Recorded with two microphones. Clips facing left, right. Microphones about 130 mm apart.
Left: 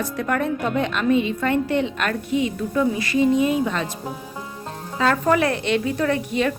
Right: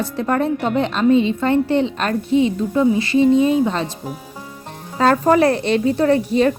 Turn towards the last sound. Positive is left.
turn(degrees=-35)  # may be behind; listen again after turning